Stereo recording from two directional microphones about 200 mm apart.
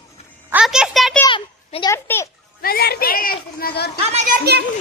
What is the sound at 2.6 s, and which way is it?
Speech, 50° left (ahead or behind).